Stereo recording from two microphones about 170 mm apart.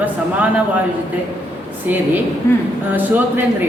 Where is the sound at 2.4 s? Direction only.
15° left (ahead or behind).